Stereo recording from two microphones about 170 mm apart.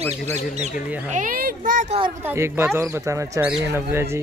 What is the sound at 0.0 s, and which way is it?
Speech, 40° right (ahead or behind).